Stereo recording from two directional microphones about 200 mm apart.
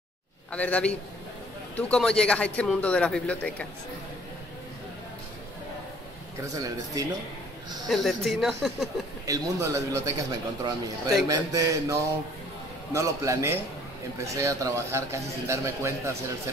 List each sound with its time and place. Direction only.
0.5 s a man's voice: 5° left (ahead or behind)
6.5 s a man's voice: 15° right (ahead or behind)
7.9 s speech: centre (ahead or behind)
9.2 s a man's voice: 15° right (ahead or behind)